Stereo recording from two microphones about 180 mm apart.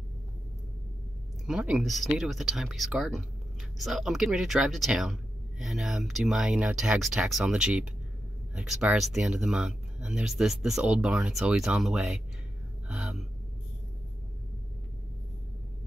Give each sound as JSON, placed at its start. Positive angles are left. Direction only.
{"t": 1.4, "sound": "speech", "side_deg": -5}